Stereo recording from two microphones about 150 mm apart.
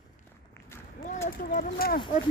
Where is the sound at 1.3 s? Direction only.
65° left (ahead or behind).